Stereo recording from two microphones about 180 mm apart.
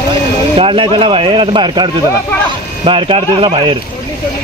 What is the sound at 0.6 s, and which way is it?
Speech, 30° right (ahead or behind).